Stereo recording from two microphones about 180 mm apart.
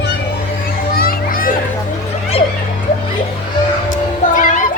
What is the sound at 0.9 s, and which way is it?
Music, 55° left (ahead or behind).